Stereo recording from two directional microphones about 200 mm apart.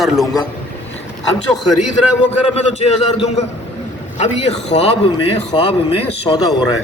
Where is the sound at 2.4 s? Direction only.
30° left (ahead or behind).